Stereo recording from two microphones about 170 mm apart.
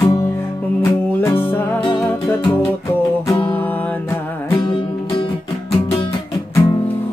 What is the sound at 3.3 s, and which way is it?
Music, 10° left (ahead or behind).